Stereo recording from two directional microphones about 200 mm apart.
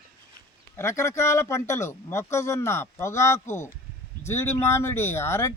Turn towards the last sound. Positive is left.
turn(degrees=15)  # may be behind; listen again after turning